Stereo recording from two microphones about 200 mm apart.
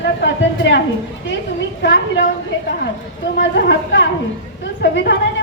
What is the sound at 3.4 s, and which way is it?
A woman's voice, 60° left (ahead or behind).